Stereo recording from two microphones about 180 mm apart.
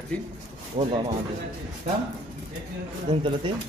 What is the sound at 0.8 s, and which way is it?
Speech, 35° right (ahead or behind).